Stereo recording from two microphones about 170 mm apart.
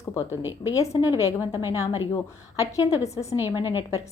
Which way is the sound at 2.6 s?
20° left (ahead or behind).